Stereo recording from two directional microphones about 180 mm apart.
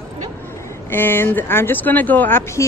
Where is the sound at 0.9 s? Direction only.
10° left (ahead or behind).